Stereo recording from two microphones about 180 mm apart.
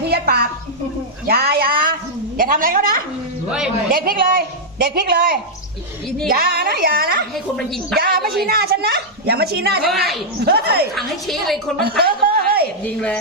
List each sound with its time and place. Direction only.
0.0 s a sound: 65° right (ahead or behind)
2.4 s a woman's voice: 50° right (ahead or behind)
7.3 s a woman's voice: centre (ahead or behind)
7.9 s a woman's voice: 60° right (ahead or behind)
10.9 s a woman's voice: centre (ahead or behind)
11.8 s chuckle: 60° right (ahead or behind)
12.8 s a woman's voice: 5° left (ahead or behind)